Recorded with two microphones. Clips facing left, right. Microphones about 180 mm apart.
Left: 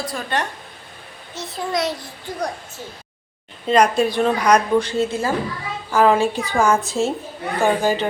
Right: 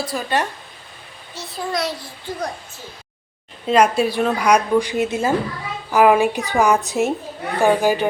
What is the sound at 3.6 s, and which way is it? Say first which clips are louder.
Speech: even; 5° right (ahead or behind).